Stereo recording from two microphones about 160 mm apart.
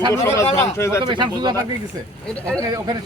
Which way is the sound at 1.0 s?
30° right (ahead or behind).